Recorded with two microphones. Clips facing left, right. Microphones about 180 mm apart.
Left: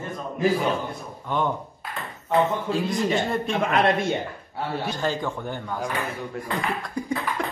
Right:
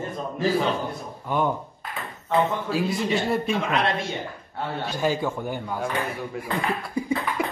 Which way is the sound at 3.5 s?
55° left (ahead or behind).